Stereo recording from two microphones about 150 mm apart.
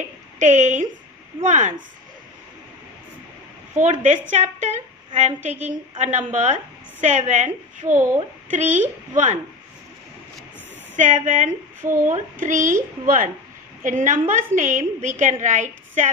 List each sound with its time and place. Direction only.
0.4 s speech: 55° right (ahead or behind)
3.7 s a woman's voice: 55° right (ahead or behind)
11.0 s a woman's voice: 55° right (ahead or behind)